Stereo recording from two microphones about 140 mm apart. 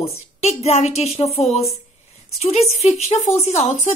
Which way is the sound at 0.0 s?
50° left (ahead or behind).